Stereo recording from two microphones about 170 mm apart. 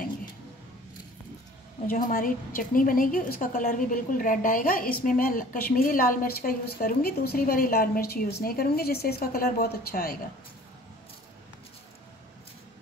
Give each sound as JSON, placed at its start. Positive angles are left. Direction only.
{"t": 1.9, "sound": "a woman's voice", "side_deg": 55}